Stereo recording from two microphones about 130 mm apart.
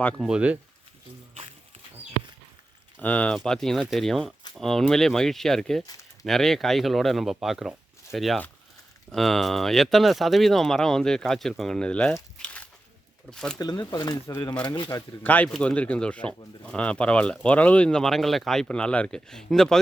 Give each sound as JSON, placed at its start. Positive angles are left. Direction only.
{"t": 0.2, "sound": "speech", "side_deg": -5}
{"t": 3.0, "sound": "speech", "side_deg": 10}
{"t": 5.8, "sound": "speech", "side_deg": 30}
{"t": 6.2, "sound": "speech", "side_deg": 0}
{"t": 12.4, "sound": "walk", "side_deg": 10}
{"t": 13.3, "sound": "speech", "side_deg": 5}
{"t": 13.6, "sound": "speech", "side_deg": 30}
{"t": 15.2, "sound": "speech", "side_deg": 10}